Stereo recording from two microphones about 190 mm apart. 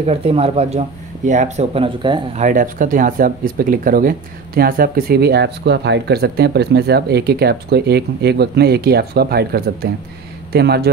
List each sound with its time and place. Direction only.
0.0 s speech: 30° right (ahead or behind)
2.4 s speech: 45° right (ahead or behind)